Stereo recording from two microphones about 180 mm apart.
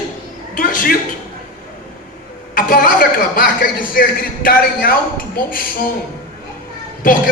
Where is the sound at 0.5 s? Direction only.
50° left (ahead or behind).